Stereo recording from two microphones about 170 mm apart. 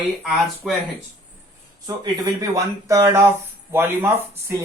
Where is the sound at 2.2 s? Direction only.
20° right (ahead or behind).